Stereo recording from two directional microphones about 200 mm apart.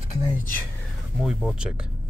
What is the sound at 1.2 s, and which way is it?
Speech, centre (ahead or behind).